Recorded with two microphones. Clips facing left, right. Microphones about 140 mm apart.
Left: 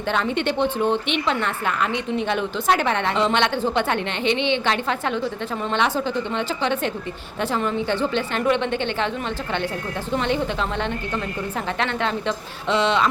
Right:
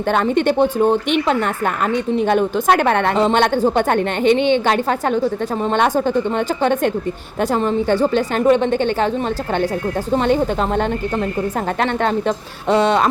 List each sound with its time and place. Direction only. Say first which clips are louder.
0.1 s a woman's voice: right 6 dB; 45° right (ahead or behind)
10.1 s speech: right 6 dB; 45° right (ahead or behind)
12.6 s speech: right 5 dB; 45° right (ahead or behind)